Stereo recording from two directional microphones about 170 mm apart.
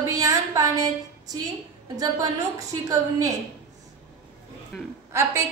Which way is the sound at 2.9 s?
20° right (ahead or behind).